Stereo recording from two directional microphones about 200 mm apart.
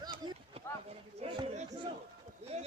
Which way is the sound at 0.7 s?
10° left (ahead or behind).